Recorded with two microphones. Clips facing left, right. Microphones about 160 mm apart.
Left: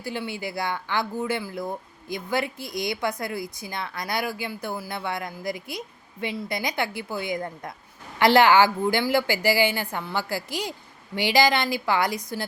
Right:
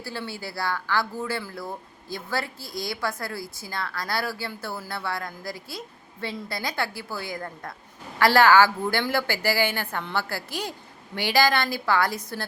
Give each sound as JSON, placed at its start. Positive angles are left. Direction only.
{"t": 0.0, "sound": "a woman's voice", "side_deg": 20}